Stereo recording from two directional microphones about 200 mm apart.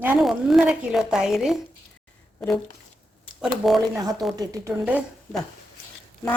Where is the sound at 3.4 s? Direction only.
Centre (ahead or behind).